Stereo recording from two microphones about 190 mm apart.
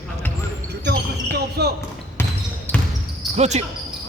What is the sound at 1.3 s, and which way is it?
Basketball bounce, 60° right (ahead or behind).